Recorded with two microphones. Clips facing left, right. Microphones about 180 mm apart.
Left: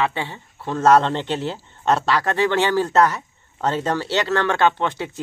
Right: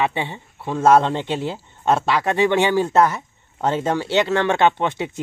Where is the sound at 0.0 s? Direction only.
20° right (ahead or behind).